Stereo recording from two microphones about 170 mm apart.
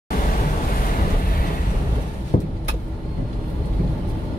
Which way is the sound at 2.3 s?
50° left (ahead or behind).